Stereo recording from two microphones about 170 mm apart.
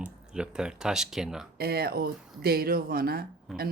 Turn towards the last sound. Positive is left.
turn(degrees=-60)  # may be behind; listen again after turning